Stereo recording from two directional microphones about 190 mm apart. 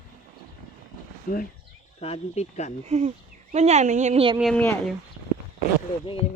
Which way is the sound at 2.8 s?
35° right (ahead or behind).